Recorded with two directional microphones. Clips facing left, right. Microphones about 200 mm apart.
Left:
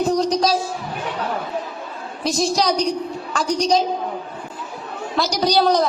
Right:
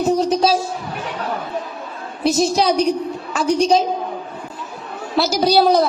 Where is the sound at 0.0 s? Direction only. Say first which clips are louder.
Right 2 dB; 5° right (ahead or behind).